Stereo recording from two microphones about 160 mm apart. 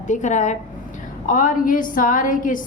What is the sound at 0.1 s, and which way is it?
A woman's voice, 50° left (ahead or behind).